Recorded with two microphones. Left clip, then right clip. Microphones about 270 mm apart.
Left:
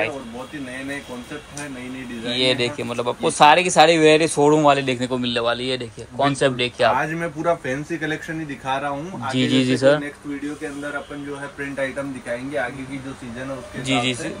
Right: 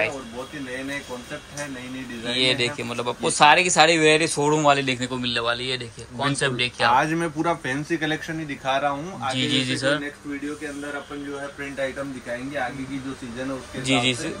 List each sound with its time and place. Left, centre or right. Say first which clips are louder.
2.2 s speech: left 2 dB; centre
7.0 s speech: right 1 dB; right
9.3 s a man's voice: left 4 dB; centre
13.8 s speech: even; centre